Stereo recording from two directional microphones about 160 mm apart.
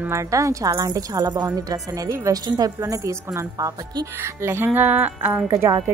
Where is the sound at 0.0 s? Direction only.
20° right (ahead or behind).